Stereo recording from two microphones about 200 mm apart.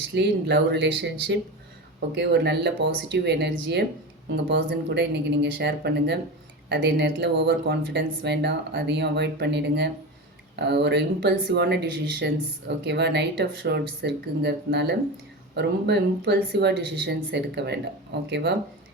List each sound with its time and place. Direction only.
0.1 s a woman's voice: 60° right (ahead or behind)